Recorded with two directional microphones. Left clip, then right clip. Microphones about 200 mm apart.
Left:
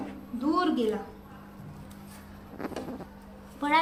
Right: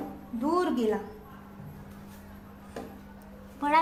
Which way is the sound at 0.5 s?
35° right (ahead or behind).